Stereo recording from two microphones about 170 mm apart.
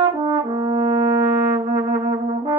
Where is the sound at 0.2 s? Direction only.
25° right (ahead or behind).